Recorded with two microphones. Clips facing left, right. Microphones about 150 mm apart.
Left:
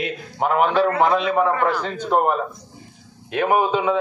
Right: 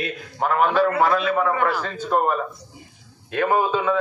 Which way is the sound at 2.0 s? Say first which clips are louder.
Left 2 dB; 20° left (ahead or behind).